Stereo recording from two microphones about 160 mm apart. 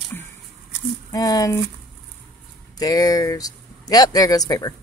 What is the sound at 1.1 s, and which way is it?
Speech, 25° left (ahead or behind).